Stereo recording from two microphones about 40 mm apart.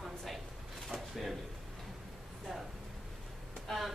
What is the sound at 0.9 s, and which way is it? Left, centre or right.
Speech, centre.